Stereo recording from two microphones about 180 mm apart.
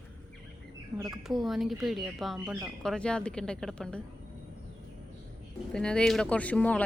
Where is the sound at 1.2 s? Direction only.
Centre (ahead or behind).